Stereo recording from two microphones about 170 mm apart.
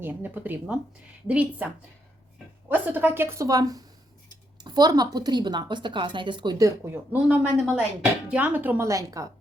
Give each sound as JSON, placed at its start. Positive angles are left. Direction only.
{"t": 0.0, "sound": "a woman's voice", "side_deg": -10}
{"t": 2.6, "sound": "a woman's voice", "side_deg": -10}